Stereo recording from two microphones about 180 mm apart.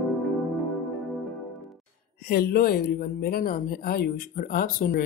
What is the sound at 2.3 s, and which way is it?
Speech, 60° left (ahead or behind).